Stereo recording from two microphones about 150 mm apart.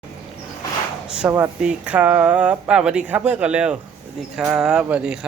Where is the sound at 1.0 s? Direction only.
5° right (ahead or behind).